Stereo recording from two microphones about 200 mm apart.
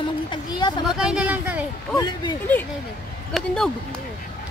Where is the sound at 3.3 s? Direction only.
Centre (ahead or behind).